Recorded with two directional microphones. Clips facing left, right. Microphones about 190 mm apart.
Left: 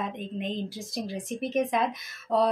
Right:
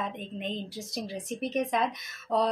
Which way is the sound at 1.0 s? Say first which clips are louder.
Left 2 dB; centre (ahead or behind).